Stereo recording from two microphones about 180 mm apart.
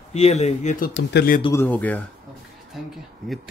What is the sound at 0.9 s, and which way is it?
Speech, 60° left (ahead or behind).